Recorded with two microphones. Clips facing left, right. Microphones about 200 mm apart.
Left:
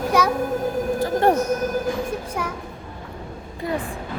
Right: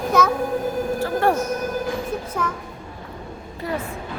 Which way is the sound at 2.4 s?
10° left (ahead or behind).